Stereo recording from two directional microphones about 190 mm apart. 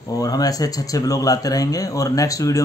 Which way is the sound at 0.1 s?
20° left (ahead or behind).